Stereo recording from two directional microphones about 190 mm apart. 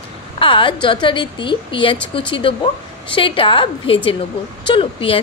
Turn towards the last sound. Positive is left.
turn(degrees=25)  # may be behind; listen again after turning